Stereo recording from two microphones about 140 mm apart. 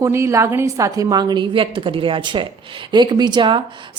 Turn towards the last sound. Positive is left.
turn(degrees=-35)  # may be behind; listen again after turning